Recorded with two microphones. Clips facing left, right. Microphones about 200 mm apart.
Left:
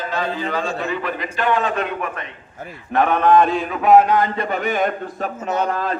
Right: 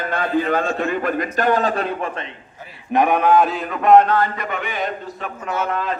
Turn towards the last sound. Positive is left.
turn(degrees=35)  # may be behind; listen again after turning